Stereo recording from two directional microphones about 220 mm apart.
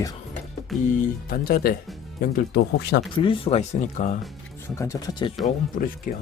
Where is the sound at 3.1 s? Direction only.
25° left (ahead or behind).